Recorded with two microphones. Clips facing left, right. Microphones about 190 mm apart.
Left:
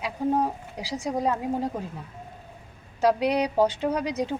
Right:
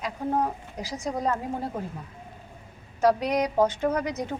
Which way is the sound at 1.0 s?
10° left (ahead or behind).